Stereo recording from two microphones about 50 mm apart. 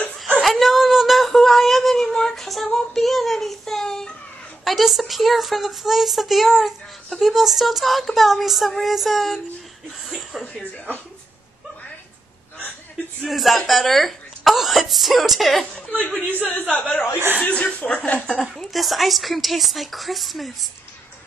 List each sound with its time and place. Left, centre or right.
0.4 s a sound: centre
4.6 s speech: centre
10.5 s a sound: left
13.2 s speech: centre
15.9 s speech: left
18.3 s speech: centre